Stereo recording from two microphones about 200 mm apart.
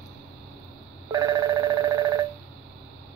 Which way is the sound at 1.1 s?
15° right (ahead or behind).